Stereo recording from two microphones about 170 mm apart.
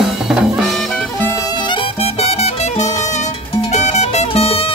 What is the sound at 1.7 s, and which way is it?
Music, 35° left (ahead or behind).